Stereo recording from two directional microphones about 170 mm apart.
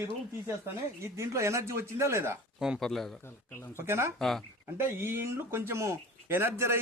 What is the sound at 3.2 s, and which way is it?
Speech, 15° left (ahead or behind).